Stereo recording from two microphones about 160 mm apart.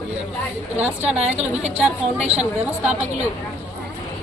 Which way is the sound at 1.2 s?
45° right (ahead or behind).